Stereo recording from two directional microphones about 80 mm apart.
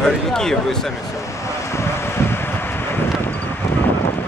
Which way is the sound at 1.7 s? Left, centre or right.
Left.